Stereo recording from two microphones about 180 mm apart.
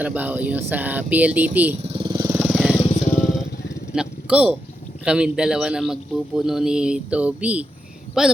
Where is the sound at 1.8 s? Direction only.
30° right (ahead or behind).